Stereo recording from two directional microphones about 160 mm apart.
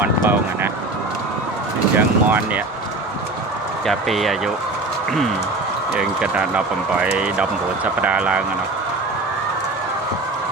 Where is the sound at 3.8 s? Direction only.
Centre (ahead or behind).